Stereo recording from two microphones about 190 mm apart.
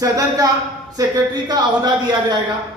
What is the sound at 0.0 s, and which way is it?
A woman's voice, 20° right (ahead or behind).